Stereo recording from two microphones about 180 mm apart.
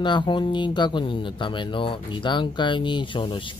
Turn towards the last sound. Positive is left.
turn(degrees=25)  # may be behind; listen again after turning